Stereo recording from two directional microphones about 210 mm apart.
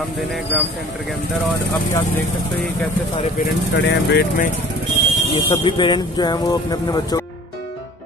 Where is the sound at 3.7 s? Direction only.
55° left (ahead or behind).